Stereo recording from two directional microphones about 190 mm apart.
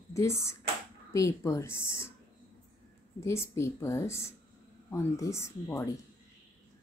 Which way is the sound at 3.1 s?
15° left (ahead or behind).